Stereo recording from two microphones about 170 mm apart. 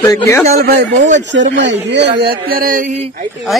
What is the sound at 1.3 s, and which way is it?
Speech, 90° right.